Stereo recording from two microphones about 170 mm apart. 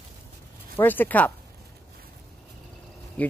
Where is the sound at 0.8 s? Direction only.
10° left (ahead or behind).